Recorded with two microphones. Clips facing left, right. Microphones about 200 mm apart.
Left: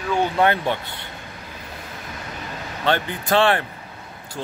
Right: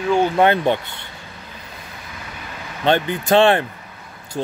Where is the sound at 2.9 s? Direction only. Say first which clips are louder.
Right 5 dB; 20° right (ahead or behind).